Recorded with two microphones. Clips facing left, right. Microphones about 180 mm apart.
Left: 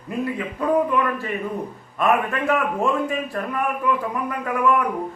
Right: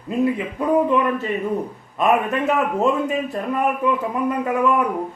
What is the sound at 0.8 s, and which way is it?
A man's voice, 20° right (ahead or behind).